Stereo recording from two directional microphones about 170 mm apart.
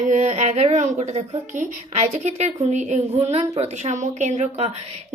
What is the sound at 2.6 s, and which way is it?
A woman's voice, 45° right (ahead or behind).